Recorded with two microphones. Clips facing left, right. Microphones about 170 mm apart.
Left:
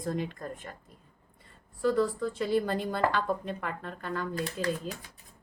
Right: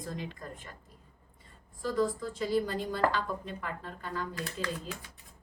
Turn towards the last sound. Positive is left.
turn(degrees=40)  # may be behind; listen again after turning